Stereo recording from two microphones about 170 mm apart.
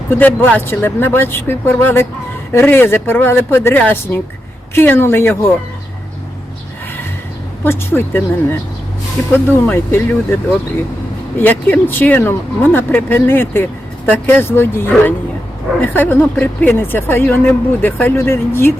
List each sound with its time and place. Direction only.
0.1 s a woman's voice: 10° left (ahead or behind)
7.6 s a woman's voice: 15° left (ahead or behind)
11.3 s a woman's voice: 10° left (ahead or behind)